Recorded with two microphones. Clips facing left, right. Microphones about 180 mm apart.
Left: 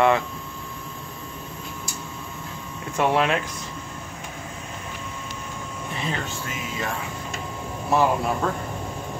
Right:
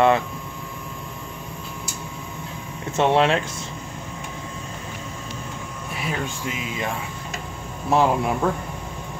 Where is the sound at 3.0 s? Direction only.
25° right (ahead or behind).